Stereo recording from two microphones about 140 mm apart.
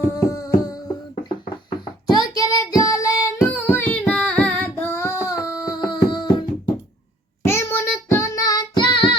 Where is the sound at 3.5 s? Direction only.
15° left (ahead or behind); by 6.3 s 30° left (ahead or behind).